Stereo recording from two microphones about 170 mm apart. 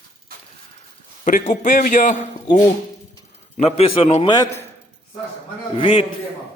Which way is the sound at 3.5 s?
40° left (ahead or behind).